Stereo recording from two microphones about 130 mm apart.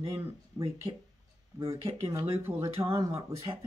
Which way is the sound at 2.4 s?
20° right (ahead or behind).